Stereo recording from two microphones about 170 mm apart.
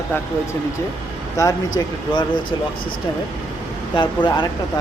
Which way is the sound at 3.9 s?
30° left (ahead or behind).